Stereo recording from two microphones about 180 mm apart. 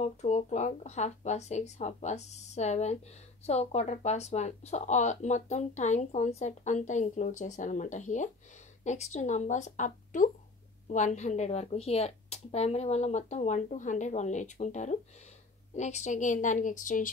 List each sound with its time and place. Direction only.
0.0 s a woman's voice: 40° left (ahead or behind)